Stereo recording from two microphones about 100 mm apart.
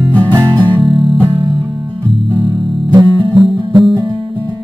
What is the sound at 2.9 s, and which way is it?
Music, 50° right (ahead or behind).